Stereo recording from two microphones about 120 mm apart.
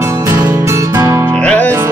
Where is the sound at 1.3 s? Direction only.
10° left (ahead or behind).